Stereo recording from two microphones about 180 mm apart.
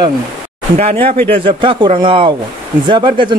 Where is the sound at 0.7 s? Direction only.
35° right (ahead or behind).